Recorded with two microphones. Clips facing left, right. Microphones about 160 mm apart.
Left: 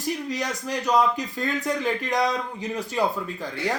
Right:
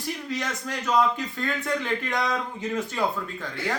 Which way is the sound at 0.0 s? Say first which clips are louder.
Left 3 dB; 40° left (ahead or behind).